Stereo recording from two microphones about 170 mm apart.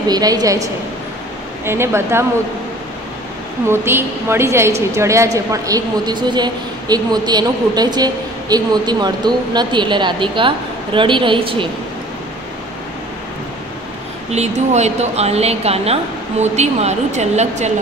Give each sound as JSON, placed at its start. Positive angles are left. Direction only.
{"t": 0.1, "sound": "a woman's voice", "side_deg": -20}
{"t": 1.7, "sound": "speech", "side_deg": -15}
{"t": 3.6, "sound": "a woman's voice", "side_deg": -15}
{"t": 14.3, "sound": "speech", "side_deg": -40}